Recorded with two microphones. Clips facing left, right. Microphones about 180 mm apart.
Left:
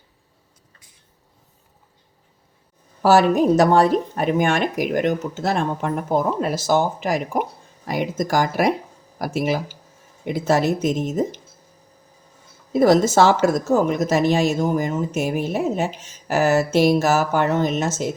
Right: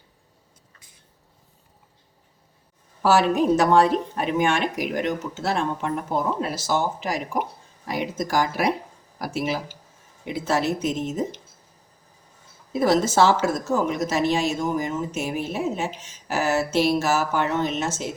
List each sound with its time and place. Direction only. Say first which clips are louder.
3.0 s speech: left 4 dB; 40° left (ahead or behind)
12.8 s speech: left 4 dB; 45° left (ahead or behind)